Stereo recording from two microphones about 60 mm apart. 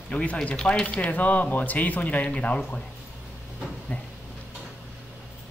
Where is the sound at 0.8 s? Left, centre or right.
Left.